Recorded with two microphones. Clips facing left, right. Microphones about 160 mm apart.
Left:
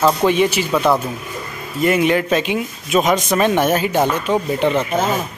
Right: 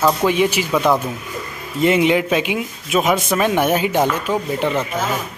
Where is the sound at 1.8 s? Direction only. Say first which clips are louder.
Right 1 dB; 20° right (ahead or behind).